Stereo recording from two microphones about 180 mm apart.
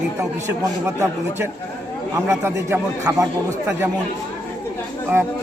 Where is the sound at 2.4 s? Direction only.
15° right (ahead or behind).